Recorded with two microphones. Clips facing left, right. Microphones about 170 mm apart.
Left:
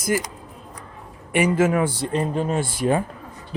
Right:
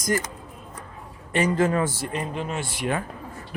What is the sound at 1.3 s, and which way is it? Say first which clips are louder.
Speech: left 3 dB; 10° left (ahead or behind).